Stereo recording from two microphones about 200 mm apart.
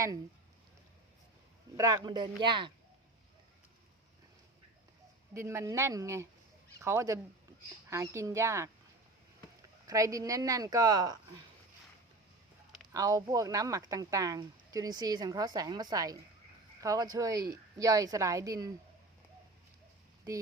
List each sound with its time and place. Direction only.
1.7 s speech: 15° right (ahead or behind)
5.3 s a woman's voice: 15° right (ahead or behind)
12.9 s a woman's voice: 15° right (ahead or behind)